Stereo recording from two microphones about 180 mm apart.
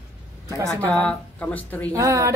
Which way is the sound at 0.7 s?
5° left (ahead or behind).